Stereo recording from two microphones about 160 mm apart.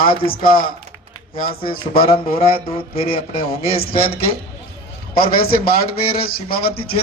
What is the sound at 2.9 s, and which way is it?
Speech, 35° left (ahead or behind).